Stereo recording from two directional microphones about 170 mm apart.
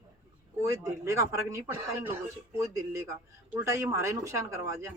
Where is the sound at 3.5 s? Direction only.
15° right (ahead or behind).